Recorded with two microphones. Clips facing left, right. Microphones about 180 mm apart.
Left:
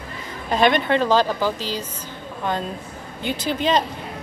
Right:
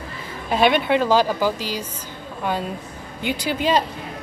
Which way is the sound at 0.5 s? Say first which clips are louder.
Even; 5° right (ahead or behind).